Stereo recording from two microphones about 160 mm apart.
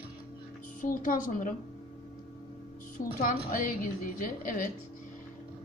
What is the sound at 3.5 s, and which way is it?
A man's voice, 60° left (ahead or behind).